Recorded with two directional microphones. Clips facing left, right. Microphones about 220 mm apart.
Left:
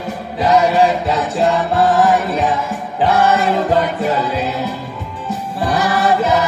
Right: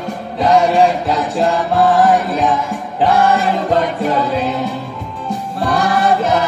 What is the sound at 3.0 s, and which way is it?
Music, centre (ahead or behind).